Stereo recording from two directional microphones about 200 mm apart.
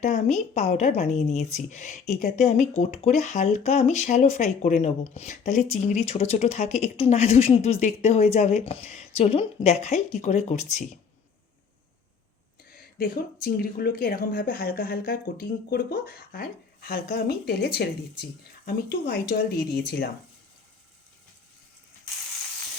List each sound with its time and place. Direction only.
0.0 s speech: 35° left (ahead or behind)
13.0 s speech: 50° left (ahead or behind)